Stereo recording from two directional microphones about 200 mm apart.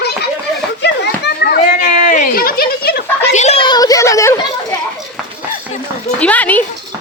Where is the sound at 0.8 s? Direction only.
55° left (ahead or behind).